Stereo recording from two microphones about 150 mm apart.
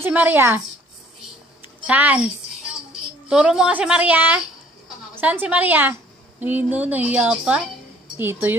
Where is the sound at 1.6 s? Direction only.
10° right (ahead or behind).